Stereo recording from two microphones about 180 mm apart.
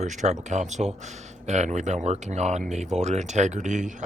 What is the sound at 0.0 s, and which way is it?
Speech, 40° right (ahead or behind).